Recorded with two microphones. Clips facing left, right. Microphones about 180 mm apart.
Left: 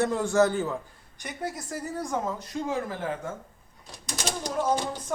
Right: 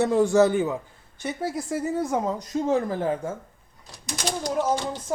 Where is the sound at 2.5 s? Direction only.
40° right (ahead or behind).